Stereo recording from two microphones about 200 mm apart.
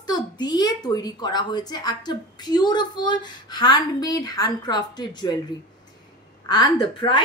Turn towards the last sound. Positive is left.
turn(degrees=25)  # may be behind; listen again after turning